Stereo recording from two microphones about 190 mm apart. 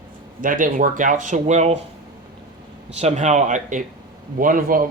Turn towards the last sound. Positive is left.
turn(degrees=-45)  # may be behind; listen again after turning